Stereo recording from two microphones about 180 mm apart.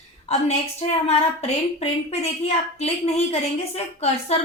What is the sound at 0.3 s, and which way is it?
A woman's voice, 35° left (ahead or behind).